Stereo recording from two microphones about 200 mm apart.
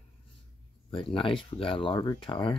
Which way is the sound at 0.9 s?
25° left (ahead or behind).